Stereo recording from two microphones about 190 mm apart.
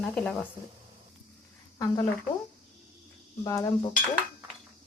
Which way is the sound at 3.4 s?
15° left (ahead or behind).